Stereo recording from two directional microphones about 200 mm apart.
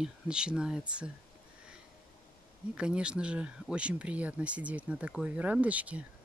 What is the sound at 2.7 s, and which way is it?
Speech, 5° right (ahead or behind).